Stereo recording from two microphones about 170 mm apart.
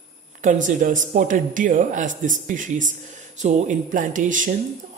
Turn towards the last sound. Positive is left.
turn(degrees=-50)  # may be behind; listen again after turning